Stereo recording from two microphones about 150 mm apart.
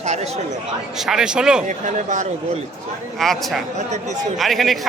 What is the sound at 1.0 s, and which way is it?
Speech, 5° right (ahead or behind).